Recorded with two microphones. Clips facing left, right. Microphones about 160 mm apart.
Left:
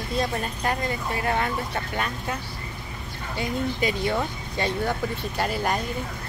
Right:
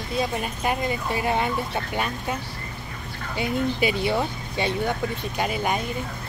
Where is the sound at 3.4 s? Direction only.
10° right (ahead or behind).